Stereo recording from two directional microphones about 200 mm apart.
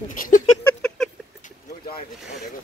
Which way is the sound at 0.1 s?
40° left (ahead or behind).